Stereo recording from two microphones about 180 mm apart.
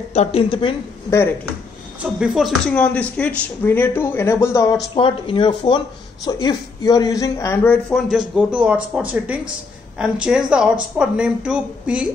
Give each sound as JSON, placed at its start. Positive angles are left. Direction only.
{"t": 0.1, "sound": "speech", "side_deg": 35}
{"t": 2.1, "sound": "speech", "side_deg": -5}
{"t": 4.9, "sound": "speech", "side_deg": 30}
{"t": 8.4, "sound": "speech", "side_deg": -5}